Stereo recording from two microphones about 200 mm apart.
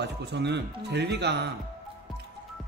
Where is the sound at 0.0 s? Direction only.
60° right (ahead or behind).